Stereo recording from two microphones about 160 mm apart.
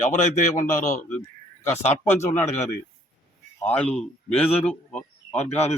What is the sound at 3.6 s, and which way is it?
A man's voice, 10° left (ahead or behind).